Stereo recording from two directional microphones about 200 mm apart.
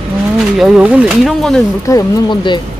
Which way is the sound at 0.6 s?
5° right (ahead or behind).